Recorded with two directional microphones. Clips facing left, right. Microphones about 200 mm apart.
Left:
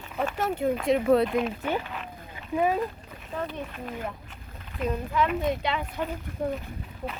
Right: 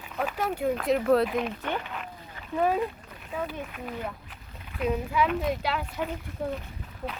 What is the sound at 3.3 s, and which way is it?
Speech, 5° right (ahead or behind).